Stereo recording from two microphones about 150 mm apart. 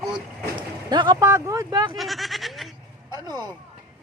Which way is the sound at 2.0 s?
Centre (ahead or behind).